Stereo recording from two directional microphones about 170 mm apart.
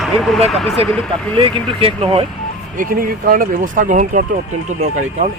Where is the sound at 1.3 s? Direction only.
35° right (ahead or behind).